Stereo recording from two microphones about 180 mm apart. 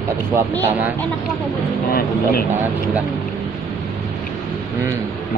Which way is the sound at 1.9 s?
55° left (ahead or behind).